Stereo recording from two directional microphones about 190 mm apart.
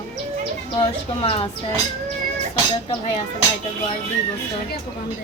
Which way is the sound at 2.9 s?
30° left (ahead or behind).